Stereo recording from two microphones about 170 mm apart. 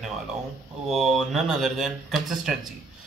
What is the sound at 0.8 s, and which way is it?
Speech, centre (ahead or behind).